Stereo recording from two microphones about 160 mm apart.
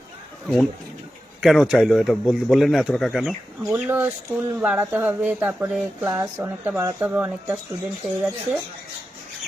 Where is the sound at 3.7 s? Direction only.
10° right (ahead or behind).